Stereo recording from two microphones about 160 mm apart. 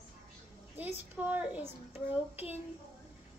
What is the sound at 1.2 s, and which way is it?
Speech, 10° right (ahead or behind).